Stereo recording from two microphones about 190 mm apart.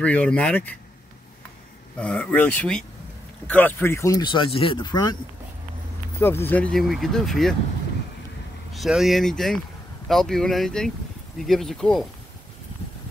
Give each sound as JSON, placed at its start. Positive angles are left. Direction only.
{"t": 0.0, "sound": "speech", "side_deg": 5}
{"t": 2.0, "sound": "speech", "side_deg": 5}
{"t": 6.2, "sound": "speech", "side_deg": 10}
{"t": 8.7, "sound": "speech", "side_deg": 0}